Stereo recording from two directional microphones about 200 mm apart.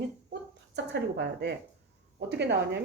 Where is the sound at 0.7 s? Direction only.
60° right (ahead or behind).